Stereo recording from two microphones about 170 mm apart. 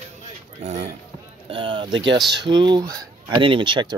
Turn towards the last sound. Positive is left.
turn(degrees=-30)  # may be behind; listen again after turning